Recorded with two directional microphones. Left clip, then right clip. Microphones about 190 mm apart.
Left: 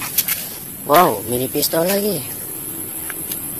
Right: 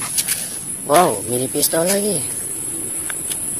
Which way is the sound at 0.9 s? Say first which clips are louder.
Left 1 dB; centre (ahead or behind).